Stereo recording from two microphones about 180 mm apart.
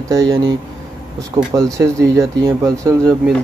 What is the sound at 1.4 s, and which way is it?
Speech, 30° right (ahead or behind).